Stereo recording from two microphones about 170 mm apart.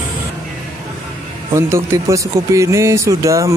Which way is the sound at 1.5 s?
15° right (ahead or behind).